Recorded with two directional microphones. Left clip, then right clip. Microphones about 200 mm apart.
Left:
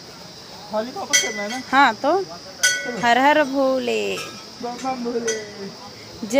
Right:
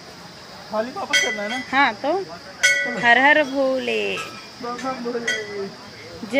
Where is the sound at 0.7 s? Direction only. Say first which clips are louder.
Even; centre (ahead or behind).